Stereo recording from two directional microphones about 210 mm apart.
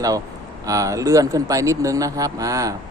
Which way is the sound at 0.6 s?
15° right (ahead or behind).